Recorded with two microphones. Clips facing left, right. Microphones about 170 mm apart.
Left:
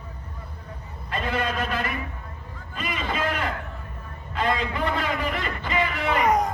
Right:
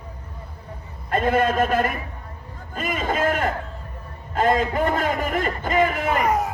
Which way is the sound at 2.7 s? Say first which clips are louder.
Right 5 dB; 45° right (ahead or behind).